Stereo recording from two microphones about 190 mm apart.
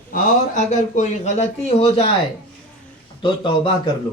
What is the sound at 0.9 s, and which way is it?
Speech, 40° left (ahead or behind).